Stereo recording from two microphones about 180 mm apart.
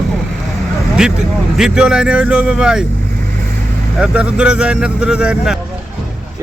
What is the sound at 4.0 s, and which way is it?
Speech, 5° right (ahead or behind).